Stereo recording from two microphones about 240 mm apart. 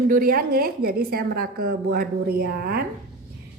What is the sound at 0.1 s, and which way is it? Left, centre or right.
A woman's voice, right.